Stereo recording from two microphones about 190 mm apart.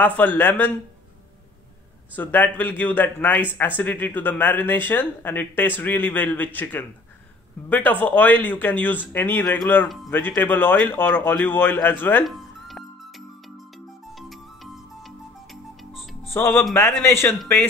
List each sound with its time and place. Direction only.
0.0 s speech: 10° left (ahead or behind)
2.1 s speech: 10° left (ahead or behind)
14.1 s music: centre (ahead or behind)
16.3 s speech: 10° left (ahead or behind)